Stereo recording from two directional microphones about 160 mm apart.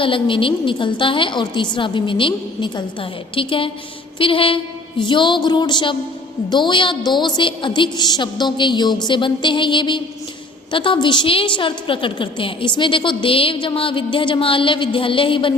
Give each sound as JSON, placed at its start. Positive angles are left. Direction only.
{"t": 0.0, "sound": "a woman's voice", "side_deg": 30}